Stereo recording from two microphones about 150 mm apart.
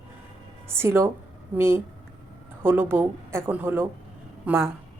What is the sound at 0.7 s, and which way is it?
A woman's voice, 15° right (ahead or behind).